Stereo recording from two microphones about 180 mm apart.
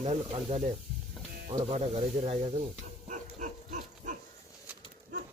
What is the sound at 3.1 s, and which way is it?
Pig, 45° right (ahead or behind).